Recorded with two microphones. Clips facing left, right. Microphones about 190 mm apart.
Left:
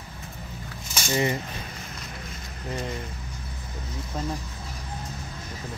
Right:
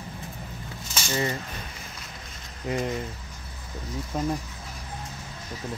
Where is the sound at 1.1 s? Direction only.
15° left (ahead or behind).